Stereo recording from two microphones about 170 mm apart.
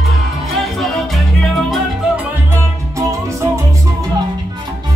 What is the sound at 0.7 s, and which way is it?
Salsa music, centre (ahead or behind).